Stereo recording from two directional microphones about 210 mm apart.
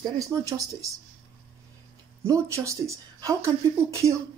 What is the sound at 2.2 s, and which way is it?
Speech, 15° right (ahead or behind).